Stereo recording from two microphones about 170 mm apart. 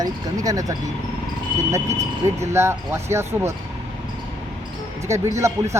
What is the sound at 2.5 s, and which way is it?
Speech, 15° right (ahead or behind).